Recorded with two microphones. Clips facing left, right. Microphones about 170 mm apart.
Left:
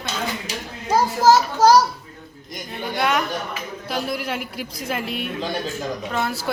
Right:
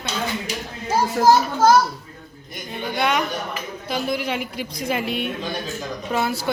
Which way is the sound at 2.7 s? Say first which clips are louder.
Even; centre (ahead or behind).